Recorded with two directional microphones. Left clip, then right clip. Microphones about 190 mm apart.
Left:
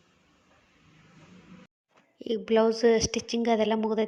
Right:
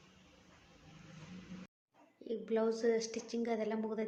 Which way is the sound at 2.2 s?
40° left (ahead or behind).